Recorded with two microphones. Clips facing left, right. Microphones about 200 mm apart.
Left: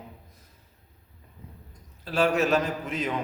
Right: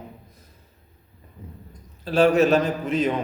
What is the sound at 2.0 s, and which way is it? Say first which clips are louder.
Speech: right 7 dB; 30° right (ahead or behind).